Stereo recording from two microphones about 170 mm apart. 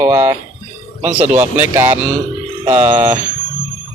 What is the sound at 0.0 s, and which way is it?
Speech, 15° right (ahead or behind).